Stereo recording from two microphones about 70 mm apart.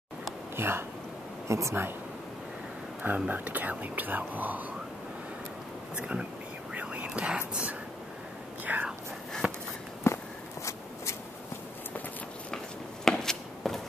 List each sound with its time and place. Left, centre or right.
0.6 s speech: right
3.3 s speech: right
5.9 s speech: centre
6.7 s whispering: centre
9.4 s walk: right
10.1 s walk: left
13.0 s walk: centre